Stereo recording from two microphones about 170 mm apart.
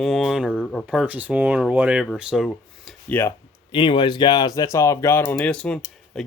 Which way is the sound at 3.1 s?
10° left (ahead or behind).